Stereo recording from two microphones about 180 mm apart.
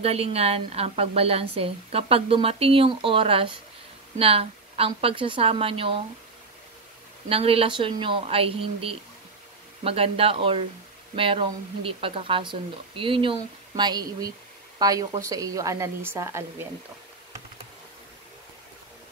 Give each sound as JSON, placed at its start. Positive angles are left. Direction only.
{"t": 0.0, "sound": "a woman's voice", "side_deg": -35}
{"t": 7.2, "sound": "a woman's voice", "side_deg": -30}